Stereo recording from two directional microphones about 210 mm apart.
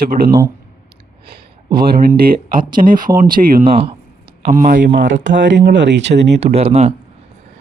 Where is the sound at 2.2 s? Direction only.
40° right (ahead or behind).